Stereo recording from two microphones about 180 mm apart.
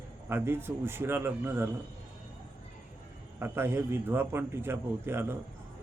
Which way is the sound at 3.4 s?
10° right (ahead or behind).